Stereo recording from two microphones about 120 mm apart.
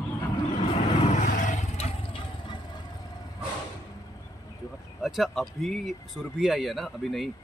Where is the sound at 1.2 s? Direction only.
90° left; by 2.0 s 65° left (ahead or behind).